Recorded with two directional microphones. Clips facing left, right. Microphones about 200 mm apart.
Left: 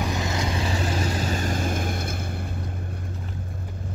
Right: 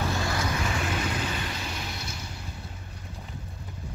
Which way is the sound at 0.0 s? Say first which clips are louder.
Left 2 dB; 20° left (ahead or behind).